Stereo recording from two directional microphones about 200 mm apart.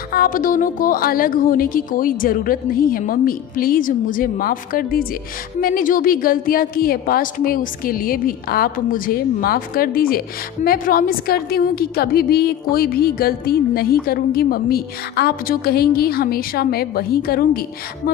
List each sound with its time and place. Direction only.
0.1 s a woman's voice: 45° left (ahead or behind)